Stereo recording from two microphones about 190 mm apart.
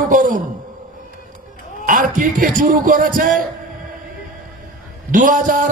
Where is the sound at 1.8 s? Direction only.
45° right (ahead or behind).